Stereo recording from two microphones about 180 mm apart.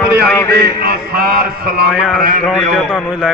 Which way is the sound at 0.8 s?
60° right (ahead or behind).